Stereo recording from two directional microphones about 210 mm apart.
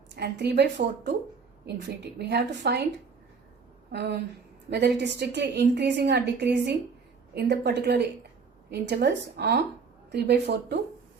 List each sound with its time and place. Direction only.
0.1 s a woman's voice: 55° right (ahead or behind)
2.1 s a woman's voice: 55° right (ahead or behind)
3.9 s a woman's voice: 55° right (ahead or behind)